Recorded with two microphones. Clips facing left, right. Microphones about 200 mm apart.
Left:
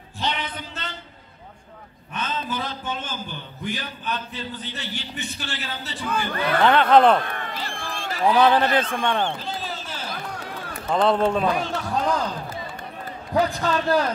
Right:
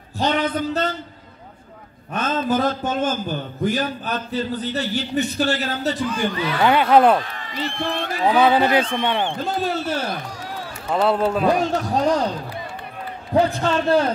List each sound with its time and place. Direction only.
0.2 s a man's voice: 45° right (ahead or behind)
2.1 s a man's voice: 45° right (ahead or behind)
6.3 s speech: 55° left (ahead or behind)
6.6 s speech: 10° right (ahead or behind)
7.2 s a man's voice: 55° left (ahead or behind)
7.8 s a man's voice: 60° right (ahead or behind)
8.4 s speech: 10° right (ahead or behind)
9.4 s a man's voice: 55° right (ahead or behind)
10.3 s run: 60° left (ahead or behind)
10.9 s a man's voice: 5° right (ahead or behind)
11.6 s a man's voice: 40° right (ahead or behind)
13.3 s a man's voice: 30° right (ahead or behind)